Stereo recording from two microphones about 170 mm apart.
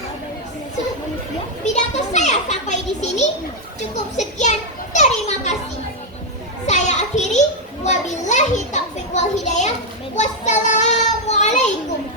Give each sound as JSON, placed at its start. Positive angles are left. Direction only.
{"t": 1.6, "sound": "a child's voice", "side_deg": 45}
{"t": 6.7, "sound": "a sound", "side_deg": 45}
{"t": 7.9, "sound": "children playing", "side_deg": 45}
{"t": 10.2, "sound": "child singing", "side_deg": 45}